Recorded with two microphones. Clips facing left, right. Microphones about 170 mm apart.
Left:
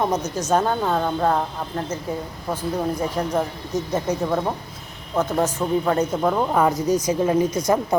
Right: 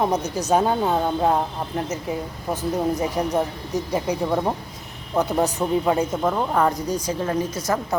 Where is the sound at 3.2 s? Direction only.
15° right (ahead or behind).